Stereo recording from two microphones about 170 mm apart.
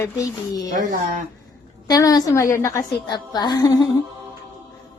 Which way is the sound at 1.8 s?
20° left (ahead or behind).